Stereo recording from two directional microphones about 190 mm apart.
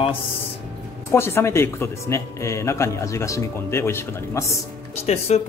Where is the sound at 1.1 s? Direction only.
15° left (ahead or behind).